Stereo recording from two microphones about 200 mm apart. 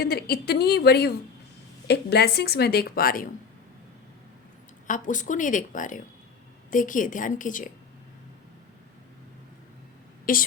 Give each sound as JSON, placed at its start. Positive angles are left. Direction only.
{"t": 0.0, "sound": "a woman's voice", "side_deg": 50}
{"t": 4.9, "sound": "a woman's voice", "side_deg": 40}
{"t": 10.3, "sound": "a woman's voice", "side_deg": 45}